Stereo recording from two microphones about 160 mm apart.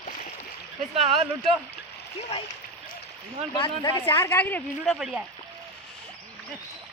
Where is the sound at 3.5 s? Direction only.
25° left (ahead or behind).